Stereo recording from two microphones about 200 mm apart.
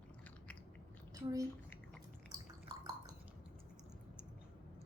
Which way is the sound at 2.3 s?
20° right (ahead or behind).